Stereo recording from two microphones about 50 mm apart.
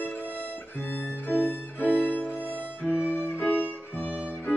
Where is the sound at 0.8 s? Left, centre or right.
Left.